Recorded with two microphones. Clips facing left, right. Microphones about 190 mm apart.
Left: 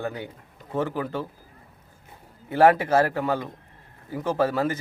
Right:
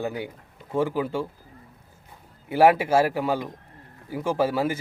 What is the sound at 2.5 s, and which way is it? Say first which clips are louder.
Speech: even; 10° right (ahead or behind).